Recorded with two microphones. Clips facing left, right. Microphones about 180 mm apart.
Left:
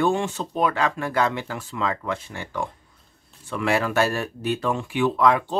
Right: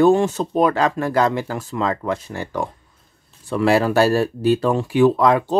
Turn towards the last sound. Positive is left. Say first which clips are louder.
# right 5 dB
turn(degrees=-40)  # may be behind; listen again after turning